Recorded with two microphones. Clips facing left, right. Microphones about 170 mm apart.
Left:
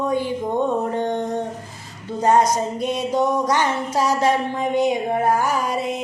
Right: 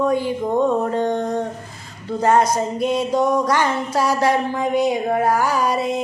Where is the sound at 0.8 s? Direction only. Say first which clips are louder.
Right 2 dB; 20° left (ahead or behind).